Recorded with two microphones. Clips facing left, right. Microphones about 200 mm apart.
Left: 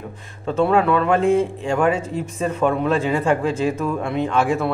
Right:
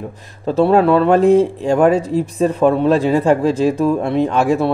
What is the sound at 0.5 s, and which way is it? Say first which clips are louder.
Speech: right 5 dB; 35° right (ahead or behind).